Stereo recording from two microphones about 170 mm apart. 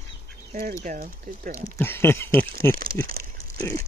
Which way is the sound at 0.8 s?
50° right (ahead or behind).